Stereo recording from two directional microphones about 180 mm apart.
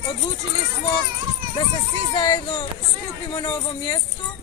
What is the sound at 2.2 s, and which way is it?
Speech, 20° left (ahead or behind).